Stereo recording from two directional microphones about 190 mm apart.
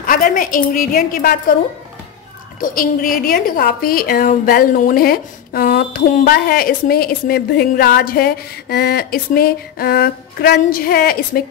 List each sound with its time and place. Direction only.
0.0 s a woman's voice: 45° left (ahead or behind)
2.6 s a woman's voice: 45° left (ahead or behind)